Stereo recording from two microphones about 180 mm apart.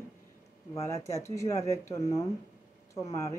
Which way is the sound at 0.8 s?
15° left (ahead or behind).